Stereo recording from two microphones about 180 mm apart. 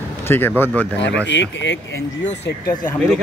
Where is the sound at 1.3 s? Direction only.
85° left.